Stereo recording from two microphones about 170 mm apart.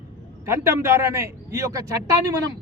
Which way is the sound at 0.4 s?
15° right (ahead or behind).